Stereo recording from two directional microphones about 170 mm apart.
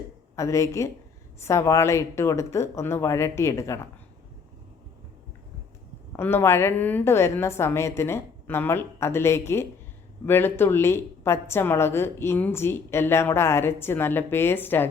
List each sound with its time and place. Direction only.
0.3 s a woman's voice: 20° left (ahead or behind)
6.1 s a woman's voice: 15° left (ahead or behind)